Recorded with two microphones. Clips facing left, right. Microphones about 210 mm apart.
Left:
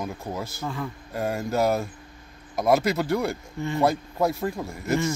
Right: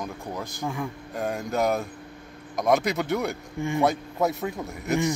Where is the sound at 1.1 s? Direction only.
Centre (ahead or behind).